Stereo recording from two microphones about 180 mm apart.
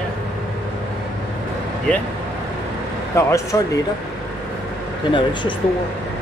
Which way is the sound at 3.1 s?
15° left (ahead or behind).